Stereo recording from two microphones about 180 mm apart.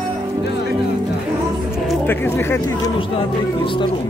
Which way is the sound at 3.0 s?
30° left (ahead or behind).